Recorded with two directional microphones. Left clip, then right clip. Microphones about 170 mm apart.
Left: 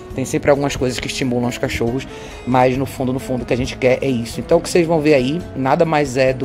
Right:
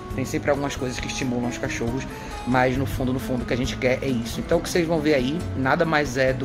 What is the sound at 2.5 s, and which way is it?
A man's voice, 35° left (ahead or behind).